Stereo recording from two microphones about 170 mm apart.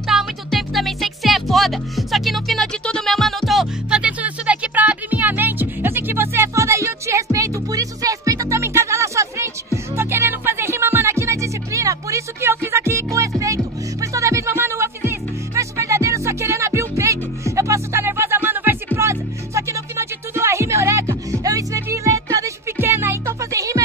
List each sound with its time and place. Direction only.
0.0 s music: centre (ahead or behind); by 23.8 s 20° right (ahead or behind)